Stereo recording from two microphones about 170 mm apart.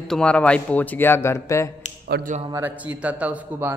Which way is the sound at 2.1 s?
80° right.